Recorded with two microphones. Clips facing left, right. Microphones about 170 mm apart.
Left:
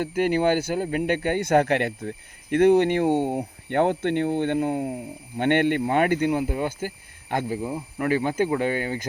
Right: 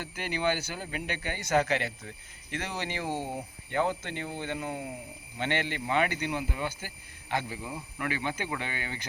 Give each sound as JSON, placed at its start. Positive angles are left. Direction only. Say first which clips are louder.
{"t": 0.0, "sound": "speech", "louder": "left 10 dB", "side_deg": 50}